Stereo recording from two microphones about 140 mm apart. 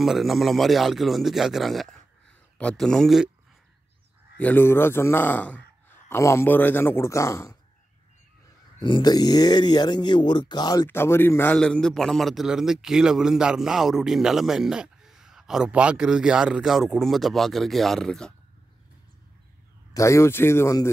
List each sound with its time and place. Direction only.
0.0 s speech: centre (ahead or behind)
4.4 s a man's voice: 15° left (ahead or behind)
8.7 s speech: 35° left (ahead or behind); by 18.3 s 5° left (ahead or behind)
19.9 s speech: 20° left (ahead or behind)